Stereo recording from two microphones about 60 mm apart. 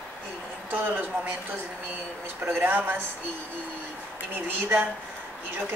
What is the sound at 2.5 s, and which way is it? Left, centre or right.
Speech, right.